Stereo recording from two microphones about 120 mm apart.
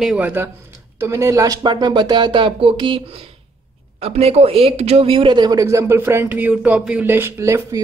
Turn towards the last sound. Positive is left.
turn(degrees=-25)  # may be behind; listen again after turning